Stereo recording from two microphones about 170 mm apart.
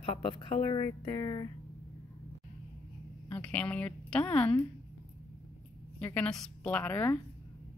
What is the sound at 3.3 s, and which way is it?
A woman's voice, 5° left (ahead or behind).